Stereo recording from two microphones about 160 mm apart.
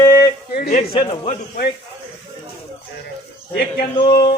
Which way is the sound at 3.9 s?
30° left (ahead or behind).